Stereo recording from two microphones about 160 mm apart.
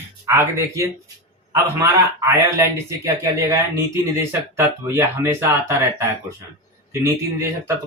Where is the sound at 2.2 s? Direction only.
15° right (ahead or behind).